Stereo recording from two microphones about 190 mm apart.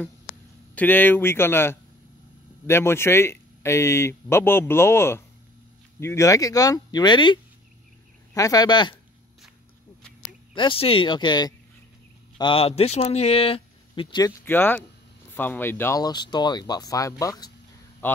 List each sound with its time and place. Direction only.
0.7 s speech: 10° left (ahead or behind)
8.4 s speech: 20° left (ahead or behind)
10.5 s speech: 25° left (ahead or behind)
14.4 s speech: 10° left (ahead or behind)
18.0 s a sound: 10° left (ahead or behind)